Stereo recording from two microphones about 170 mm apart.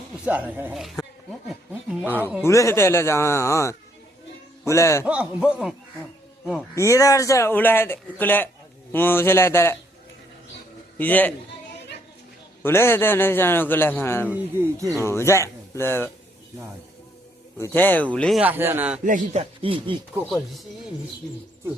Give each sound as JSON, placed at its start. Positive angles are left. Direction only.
{"t": 0.3, "sound": "speech", "side_deg": -10}
{"t": 2.0, "sound": "a man's voice", "side_deg": 10}
{"t": 5.0, "sound": "a man's voice", "side_deg": -5}
{"t": 6.7, "sound": "a man's voice", "side_deg": 15}
{"t": 10.9, "sound": "a man's voice", "side_deg": 10}
{"t": 12.6, "sound": "a man's voice", "side_deg": 15}
{"t": 17.6, "sound": "a man's voice", "side_deg": 10}
{"t": 18.3, "sound": "speech", "side_deg": -10}
{"t": 19.0, "sound": "speech", "side_deg": -45}